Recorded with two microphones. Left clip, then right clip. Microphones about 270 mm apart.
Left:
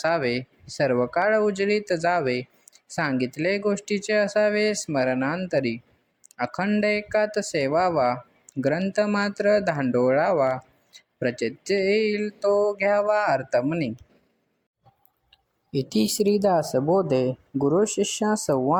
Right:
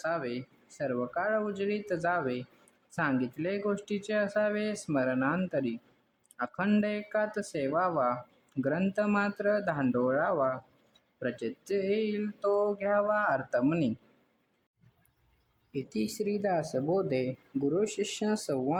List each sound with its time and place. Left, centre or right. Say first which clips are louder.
0.0 s speech: left 10 dB; left
15.7 s speech: left 10 dB; left